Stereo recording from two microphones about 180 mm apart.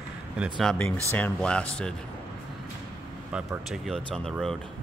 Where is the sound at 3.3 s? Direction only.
Centre (ahead or behind).